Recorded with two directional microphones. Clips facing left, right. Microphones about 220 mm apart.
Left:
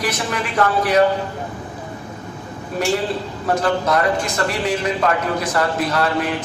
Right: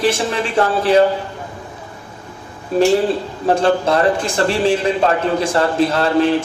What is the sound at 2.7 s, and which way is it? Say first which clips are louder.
A man's voice: right 7 dB; 30° right (ahead or behind).